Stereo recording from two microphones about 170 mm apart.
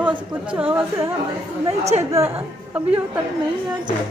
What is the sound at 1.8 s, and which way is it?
Speech, 40° right (ahead or behind).